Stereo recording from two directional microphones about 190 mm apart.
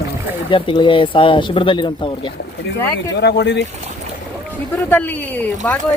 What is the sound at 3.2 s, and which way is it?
Speech, 65° left (ahead or behind).